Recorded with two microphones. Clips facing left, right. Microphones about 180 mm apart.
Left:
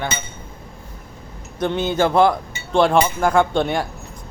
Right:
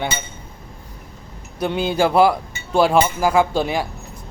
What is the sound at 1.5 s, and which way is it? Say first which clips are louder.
Speech: even; 10° right (ahead or behind).